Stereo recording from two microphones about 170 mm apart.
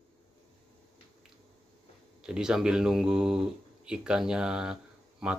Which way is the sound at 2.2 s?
5° right (ahead or behind).